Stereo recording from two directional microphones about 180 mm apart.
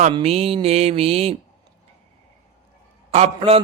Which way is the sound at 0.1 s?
35° right (ahead or behind).